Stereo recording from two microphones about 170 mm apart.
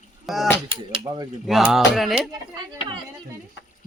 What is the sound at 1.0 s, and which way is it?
Speech, 20° right (ahead or behind).